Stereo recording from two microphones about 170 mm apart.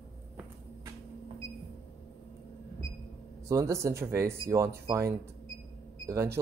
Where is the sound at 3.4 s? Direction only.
15° right (ahead or behind).